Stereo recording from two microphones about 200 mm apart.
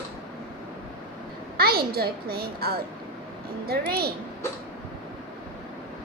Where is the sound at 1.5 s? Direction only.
50° right (ahead or behind).